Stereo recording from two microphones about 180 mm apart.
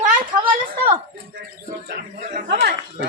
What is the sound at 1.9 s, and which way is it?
A man's voice, 60° right (ahead or behind).